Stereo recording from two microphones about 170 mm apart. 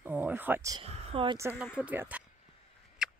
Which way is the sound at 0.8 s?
35° right (ahead or behind).